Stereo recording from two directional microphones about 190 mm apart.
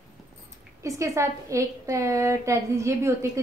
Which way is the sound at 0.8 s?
15° right (ahead or behind).